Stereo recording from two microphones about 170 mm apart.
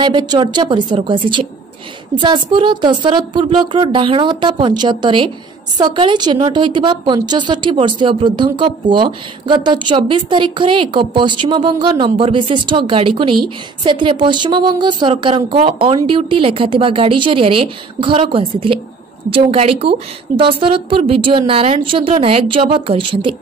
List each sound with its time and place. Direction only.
0.0 s a woman's voice: 25° right (ahead or behind)